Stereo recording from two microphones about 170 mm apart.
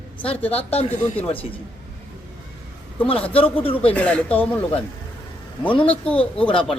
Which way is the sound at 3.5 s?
30° left (ahead or behind).